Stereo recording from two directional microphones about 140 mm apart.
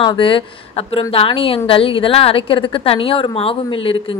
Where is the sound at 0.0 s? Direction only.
35° left (ahead or behind).